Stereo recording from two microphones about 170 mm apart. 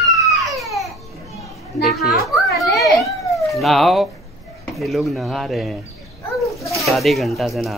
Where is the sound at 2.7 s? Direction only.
20° left (ahead or behind).